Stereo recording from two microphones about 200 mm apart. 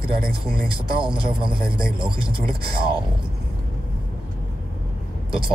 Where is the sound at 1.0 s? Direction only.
25° right (ahead or behind).